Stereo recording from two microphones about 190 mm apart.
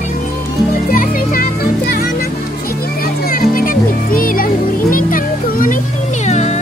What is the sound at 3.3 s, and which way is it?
Music, 50° left (ahead or behind).